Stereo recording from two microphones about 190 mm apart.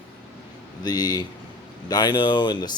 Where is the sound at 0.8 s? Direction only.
20° left (ahead or behind).